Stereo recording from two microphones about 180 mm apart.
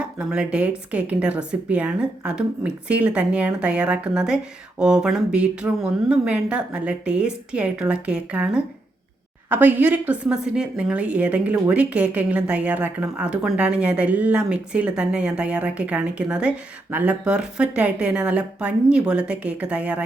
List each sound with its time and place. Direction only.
0.0 s a woman's voice: 5° right (ahead or behind)